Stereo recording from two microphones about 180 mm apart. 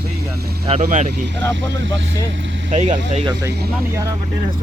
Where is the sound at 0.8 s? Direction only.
45° right (ahead or behind).